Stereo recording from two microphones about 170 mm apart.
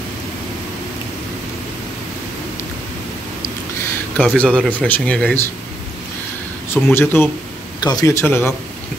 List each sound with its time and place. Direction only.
4.2 s speech: 10° left (ahead or behind)
6.7 s speech: 15° left (ahead or behind)